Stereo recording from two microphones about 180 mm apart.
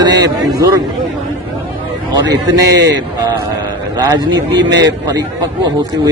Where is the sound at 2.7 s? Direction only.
75° right (ahead or behind).